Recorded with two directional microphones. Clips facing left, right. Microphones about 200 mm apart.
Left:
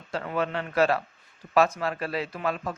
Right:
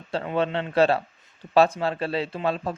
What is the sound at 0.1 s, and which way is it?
A man's voice, 30° right (ahead or behind).